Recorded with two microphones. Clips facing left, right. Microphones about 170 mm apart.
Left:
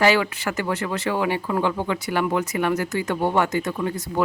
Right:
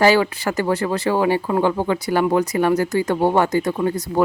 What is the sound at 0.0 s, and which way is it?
Speech, 35° right (ahead or behind).